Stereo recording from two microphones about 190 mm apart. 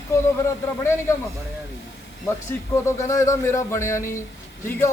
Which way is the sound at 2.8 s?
15° left (ahead or behind).